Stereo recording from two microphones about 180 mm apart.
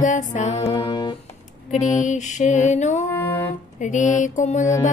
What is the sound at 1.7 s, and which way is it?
Music, 40° left (ahead or behind).